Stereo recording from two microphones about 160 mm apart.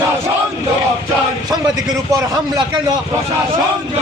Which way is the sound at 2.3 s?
25° right (ahead or behind).